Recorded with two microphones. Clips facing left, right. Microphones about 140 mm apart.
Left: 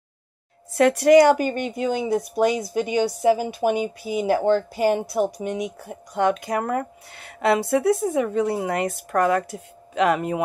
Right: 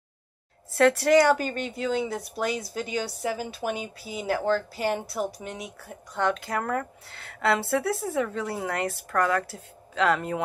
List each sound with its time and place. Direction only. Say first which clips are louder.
0.7 s speech: left 5 dB; 15° left (ahead or behind)